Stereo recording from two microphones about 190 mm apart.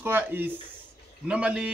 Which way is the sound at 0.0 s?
10° right (ahead or behind).